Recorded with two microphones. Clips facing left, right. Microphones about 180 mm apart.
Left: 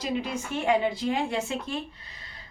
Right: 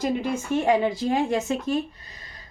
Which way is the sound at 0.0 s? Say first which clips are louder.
Right 5 dB; 50° right (ahead or behind).